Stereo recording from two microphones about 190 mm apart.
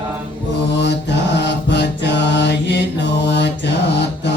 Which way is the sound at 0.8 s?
65° left (ahead or behind).